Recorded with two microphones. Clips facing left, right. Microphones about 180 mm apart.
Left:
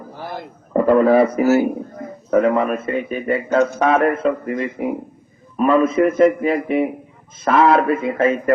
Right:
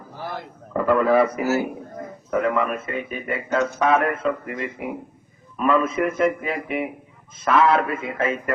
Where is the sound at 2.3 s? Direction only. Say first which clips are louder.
Left 6 dB; 35° left (ahead or behind).